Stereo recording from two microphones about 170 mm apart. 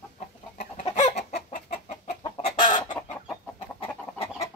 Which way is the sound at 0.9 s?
45° left (ahead or behind).